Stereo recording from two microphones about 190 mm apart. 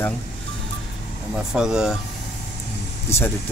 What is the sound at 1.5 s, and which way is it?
Speech, 5° right (ahead or behind).